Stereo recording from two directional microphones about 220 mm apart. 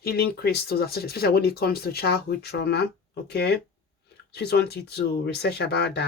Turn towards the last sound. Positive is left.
turn(degrees=50)  # may be behind; listen again after turning